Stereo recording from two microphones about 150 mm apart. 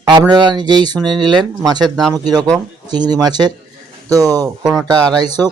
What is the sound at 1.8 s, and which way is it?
Speech, centre (ahead or behind).